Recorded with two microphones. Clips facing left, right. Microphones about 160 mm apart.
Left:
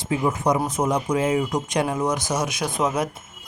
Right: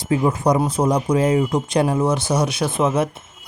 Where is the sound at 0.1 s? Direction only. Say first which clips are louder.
Right 4 dB; 35° right (ahead or behind).